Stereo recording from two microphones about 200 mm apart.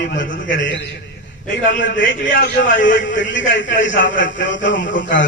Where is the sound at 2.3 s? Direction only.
50° left (ahead or behind).